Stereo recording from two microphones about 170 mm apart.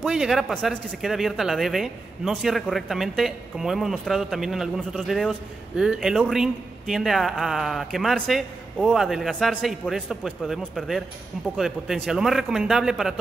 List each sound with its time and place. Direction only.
0.0 s speech: centre (ahead or behind)